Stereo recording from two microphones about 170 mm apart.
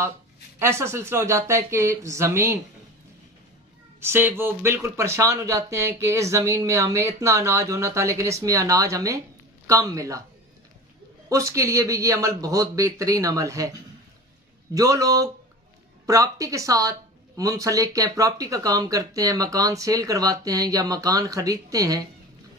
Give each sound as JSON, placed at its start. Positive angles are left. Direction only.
{"t": 0.6, "sound": "speech", "side_deg": -15}
{"t": 4.0, "sound": "speech", "side_deg": -15}
{"t": 11.2, "sound": "speech", "side_deg": -20}
{"t": 14.7, "sound": "speech", "side_deg": -20}